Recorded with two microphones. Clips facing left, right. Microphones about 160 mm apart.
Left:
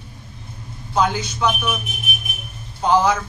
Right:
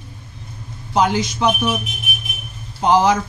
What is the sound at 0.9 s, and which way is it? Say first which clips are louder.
Speech: right 3 dB; 15° right (ahead or behind).